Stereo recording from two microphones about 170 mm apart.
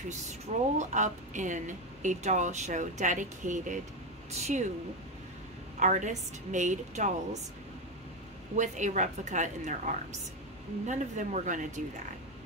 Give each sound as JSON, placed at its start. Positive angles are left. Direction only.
{"t": 0.1, "sound": "speech", "side_deg": -40}
{"t": 5.8, "sound": "speech", "side_deg": -45}
{"t": 8.5, "sound": "speech", "side_deg": -45}